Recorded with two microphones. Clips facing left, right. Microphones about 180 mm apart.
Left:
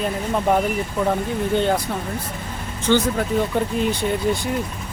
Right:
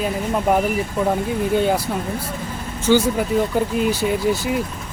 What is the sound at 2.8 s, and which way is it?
Speech, 10° right (ahead or behind).